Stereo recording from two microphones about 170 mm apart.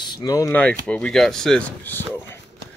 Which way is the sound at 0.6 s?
5° left (ahead or behind).